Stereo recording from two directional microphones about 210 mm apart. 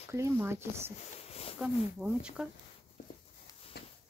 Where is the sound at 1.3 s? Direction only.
30° left (ahead or behind).